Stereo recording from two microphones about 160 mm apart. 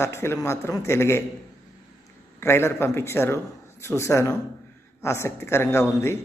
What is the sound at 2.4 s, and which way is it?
A man's voice, 15° left (ahead or behind).